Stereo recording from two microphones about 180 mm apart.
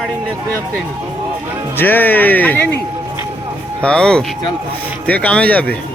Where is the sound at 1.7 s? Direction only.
10° left (ahead or behind).